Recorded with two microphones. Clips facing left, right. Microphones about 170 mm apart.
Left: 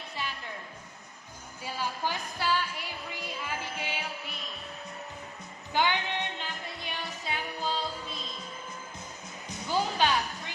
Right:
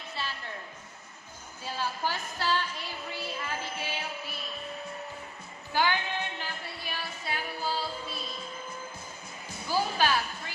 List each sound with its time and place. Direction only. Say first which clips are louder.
0.2 s music: even; 15° left (ahead or behind)
1.6 s music: right 1 dB; 15° left (ahead or behind)
5.7 s music: even; 20° left (ahead or behind)
9.5 s music: even; 20° left (ahead or behind)